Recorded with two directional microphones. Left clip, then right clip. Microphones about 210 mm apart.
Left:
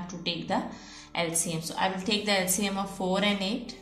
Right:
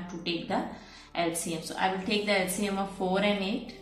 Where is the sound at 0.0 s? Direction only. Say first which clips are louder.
Even; 45° left (ahead or behind).